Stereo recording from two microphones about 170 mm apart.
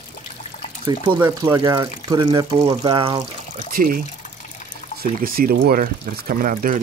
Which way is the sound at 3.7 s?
60° right (ahead or behind).